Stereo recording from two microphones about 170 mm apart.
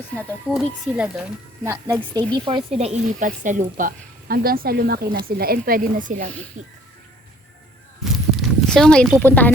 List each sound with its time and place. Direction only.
0.4 s a woman's voice: centre (ahead or behind)
2.1 s speech: 25° right (ahead or behind)
2.7 s speech: 40° right (ahead or behind)
8.0 s a sound: centre (ahead or behind)